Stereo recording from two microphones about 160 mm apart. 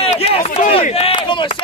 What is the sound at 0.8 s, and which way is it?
Speech, 40° left (ahead or behind).